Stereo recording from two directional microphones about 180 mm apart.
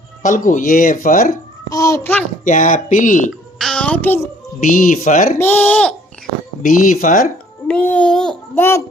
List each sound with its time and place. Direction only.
0.2 s speech: 45° left (ahead or behind)
1.7 s speech: 15° left (ahead or behind)
2.4 s speech: 45° left (ahead or behind)
3.6 s a child's voice: 5° left (ahead or behind)
4.7 s speech: 45° left (ahead or behind)
5.4 s speech: 10° left (ahead or behind)
6.6 s speech: 50° left (ahead or behind)
7.7 s a child's voice: 5° left (ahead or behind)